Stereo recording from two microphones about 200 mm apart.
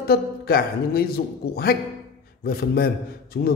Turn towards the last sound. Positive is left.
turn(degrees=55)  # may be behind; listen again after turning